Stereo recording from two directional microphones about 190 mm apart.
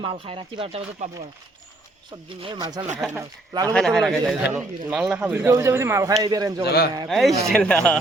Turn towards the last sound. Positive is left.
turn(degrees=5)  # may be behind; listen again after turning